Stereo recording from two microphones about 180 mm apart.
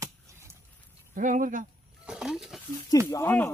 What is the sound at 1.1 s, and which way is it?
Speech, 45° right (ahead or behind).